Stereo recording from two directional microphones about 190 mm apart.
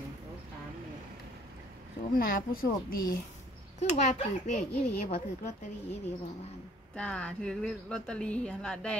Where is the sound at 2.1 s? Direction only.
50° left (ahead or behind).